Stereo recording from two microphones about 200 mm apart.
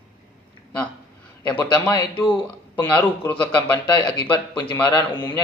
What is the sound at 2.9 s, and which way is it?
A man's voice, 10° left (ahead or behind).